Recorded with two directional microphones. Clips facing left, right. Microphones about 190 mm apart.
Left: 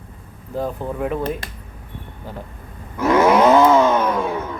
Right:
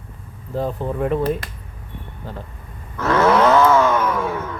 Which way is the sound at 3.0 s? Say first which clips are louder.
Left 2 dB; 15° left (ahead or behind).